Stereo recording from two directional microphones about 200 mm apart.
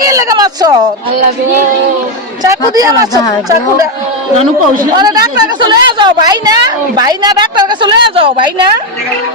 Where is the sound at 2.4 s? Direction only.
20° right (ahead or behind).